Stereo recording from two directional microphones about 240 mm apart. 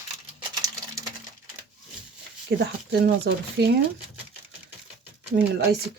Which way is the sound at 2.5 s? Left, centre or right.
Right.